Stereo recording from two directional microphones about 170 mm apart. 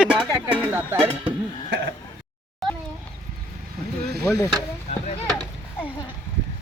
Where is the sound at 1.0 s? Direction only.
30° right (ahead or behind).